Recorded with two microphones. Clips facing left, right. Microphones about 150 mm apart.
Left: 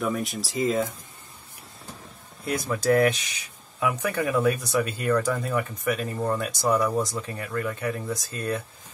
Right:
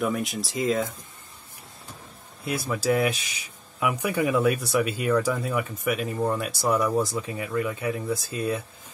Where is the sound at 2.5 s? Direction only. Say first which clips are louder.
Left 2 dB; 5° right (ahead or behind).